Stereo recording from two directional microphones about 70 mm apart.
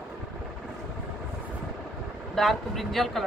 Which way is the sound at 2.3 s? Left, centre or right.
Centre.